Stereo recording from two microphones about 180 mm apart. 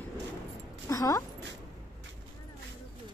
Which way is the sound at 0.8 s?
20° left (ahead or behind).